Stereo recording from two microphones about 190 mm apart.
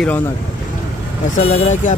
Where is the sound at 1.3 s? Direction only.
40° left (ahead or behind).